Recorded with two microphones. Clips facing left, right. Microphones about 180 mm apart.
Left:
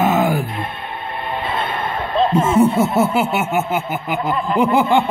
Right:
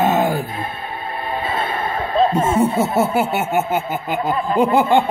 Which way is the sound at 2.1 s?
40° right (ahead or behind).